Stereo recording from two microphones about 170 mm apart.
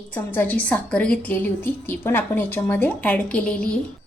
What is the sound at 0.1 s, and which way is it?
A woman's voice, 10° left (ahead or behind).